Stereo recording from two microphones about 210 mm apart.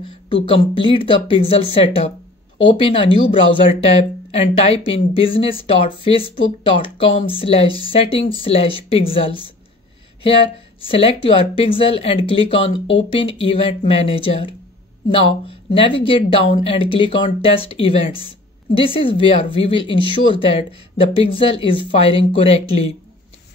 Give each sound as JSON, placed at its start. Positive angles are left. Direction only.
{"t": 0.3, "sound": "speech", "side_deg": 25}